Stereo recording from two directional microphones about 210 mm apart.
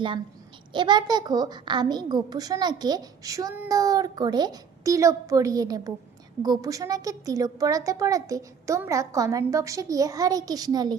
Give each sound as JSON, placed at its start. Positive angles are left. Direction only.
{"t": 0.7, "sound": "a child's voice", "side_deg": -20}